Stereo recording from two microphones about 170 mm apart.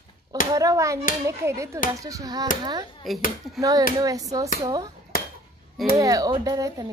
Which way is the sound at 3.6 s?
20° right (ahead or behind).